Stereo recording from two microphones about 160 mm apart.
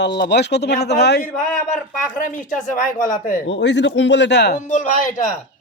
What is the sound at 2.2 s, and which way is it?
Speech, 55° left (ahead or behind).